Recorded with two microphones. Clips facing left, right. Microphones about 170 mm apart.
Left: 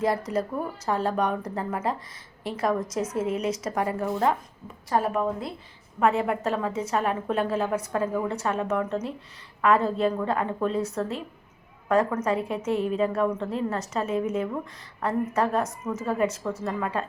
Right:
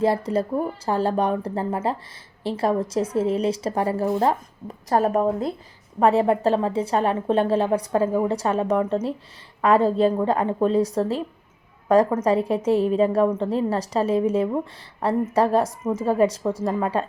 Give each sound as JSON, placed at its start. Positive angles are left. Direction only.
{"t": 0.0, "sound": "a woman's voice", "side_deg": -30}